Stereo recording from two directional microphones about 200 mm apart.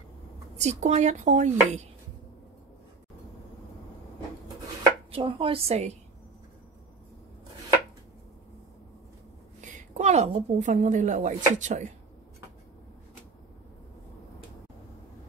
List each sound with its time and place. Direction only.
0.6 s speech: 35° right (ahead or behind)
5.1 s a woman's voice: 25° right (ahead or behind)
9.6 s a woman's voice: 35° right (ahead or behind)